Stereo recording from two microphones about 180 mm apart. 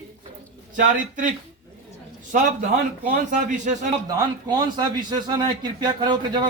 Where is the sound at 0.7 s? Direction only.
45° right (ahead or behind).